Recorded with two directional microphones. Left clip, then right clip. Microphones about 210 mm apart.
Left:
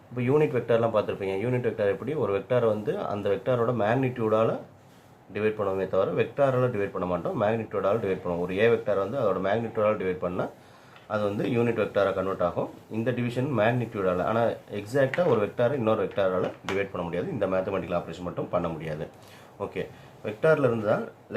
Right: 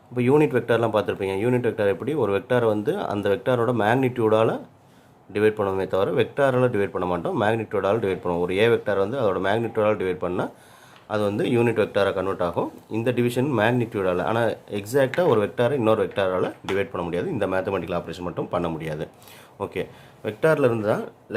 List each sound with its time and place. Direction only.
0.2 s speech: 55° right (ahead or behind)